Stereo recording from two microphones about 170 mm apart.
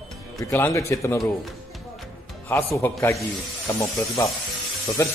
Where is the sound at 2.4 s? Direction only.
15° left (ahead or behind).